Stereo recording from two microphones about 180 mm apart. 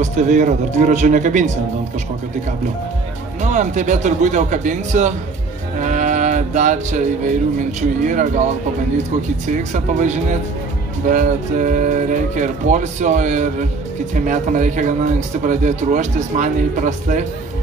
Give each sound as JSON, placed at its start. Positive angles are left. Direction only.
{"t": 0.0, "sound": "speech", "side_deg": -40}
{"t": 3.4, "sound": "speech", "side_deg": -40}
{"t": 5.8, "sound": "music", "side_deg": -45}
{"t": 8.1, "sound": "speech", "side_deg": -45}
{"t": 9.5, "sound": "speech", "side_deg": -40}